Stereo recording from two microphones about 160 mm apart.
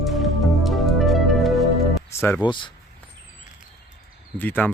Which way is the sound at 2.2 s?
15° left (ahead or behind).